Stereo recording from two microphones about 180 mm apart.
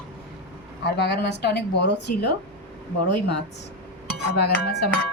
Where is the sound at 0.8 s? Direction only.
75° left (ahead or behind).